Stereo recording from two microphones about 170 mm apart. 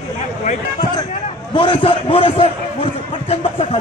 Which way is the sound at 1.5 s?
30° left (ahead or behind).